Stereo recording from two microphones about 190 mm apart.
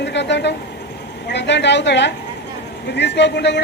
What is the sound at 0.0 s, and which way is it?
Vehicle, 65° left (ahead or behind).